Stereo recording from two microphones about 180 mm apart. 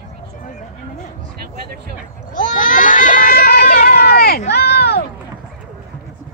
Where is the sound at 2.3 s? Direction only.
45° left (ahead or behind); by 5.0 s 65° left (ahead or behind).